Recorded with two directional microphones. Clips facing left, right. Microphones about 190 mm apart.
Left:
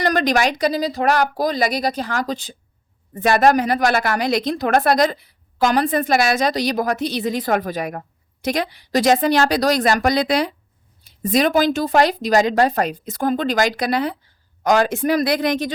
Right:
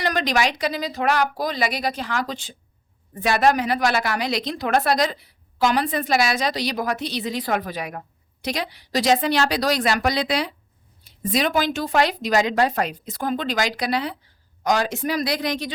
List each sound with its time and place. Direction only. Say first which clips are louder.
0.0 s a woman's voice: left 4 dB; 45° left (ahead or behind)